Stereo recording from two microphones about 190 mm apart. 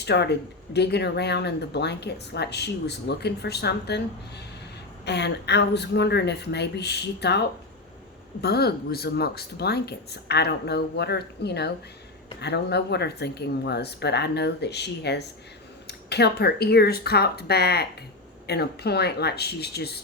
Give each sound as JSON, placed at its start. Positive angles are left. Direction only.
{"t": 0.0, "sound": "speech", "side_deg": 60}